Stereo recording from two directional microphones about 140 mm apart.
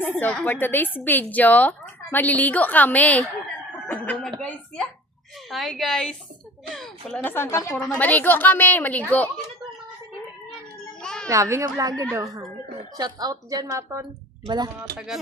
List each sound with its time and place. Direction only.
0.2 s a woman's voice: 10° left (ahead or behind)
7.9 s speech: 10° left (ahead or behind)
11.0 s children playing: 5° left (ahead or behind)
11.3 s a woman's voice: 20° right (ahead or behind)
14.8 s a woman's voice: 5° right (ahead or behind)